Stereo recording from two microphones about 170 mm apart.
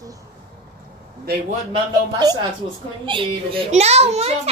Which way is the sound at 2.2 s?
25° right (ahead or behind).